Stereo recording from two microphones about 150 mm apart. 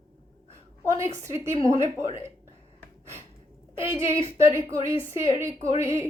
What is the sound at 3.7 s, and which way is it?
Speech, 20° right (ahead or behind).